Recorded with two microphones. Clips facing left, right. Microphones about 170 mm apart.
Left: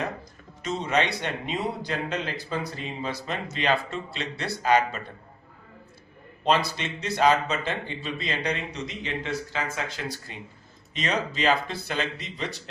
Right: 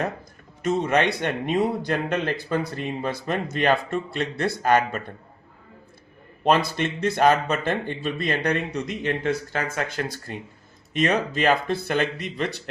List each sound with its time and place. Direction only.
0.6 s a man's voice: 50° right (ahead or behind)
6.4 s a man's voice: 55° right (ahead or behind)